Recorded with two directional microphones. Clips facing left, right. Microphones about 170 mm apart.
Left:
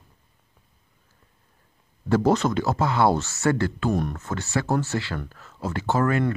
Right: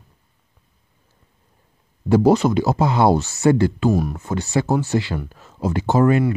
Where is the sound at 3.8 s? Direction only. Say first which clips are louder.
Right 5 dB; 5° right (ahead or behind).